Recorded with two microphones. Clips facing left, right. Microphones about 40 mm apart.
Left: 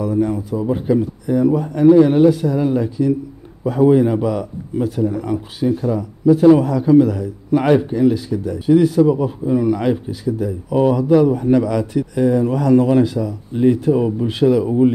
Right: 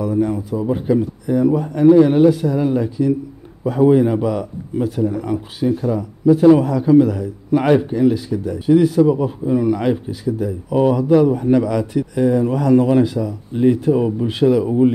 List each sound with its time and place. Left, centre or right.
0.0 s a man's voice: centre